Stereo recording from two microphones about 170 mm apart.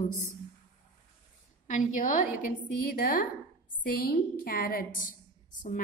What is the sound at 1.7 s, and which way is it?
A woman's voice, 50° left (ahead or behind).